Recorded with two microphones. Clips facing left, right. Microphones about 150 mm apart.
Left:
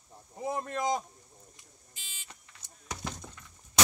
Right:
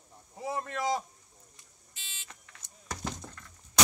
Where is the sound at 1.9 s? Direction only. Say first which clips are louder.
Right 1 dB; 10° left (ahead or behind).